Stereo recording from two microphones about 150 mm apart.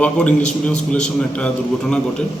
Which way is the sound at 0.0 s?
10° left (ahead or behind).